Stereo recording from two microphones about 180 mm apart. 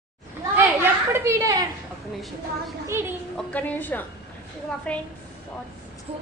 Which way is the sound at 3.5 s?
10° left (ahead or behind).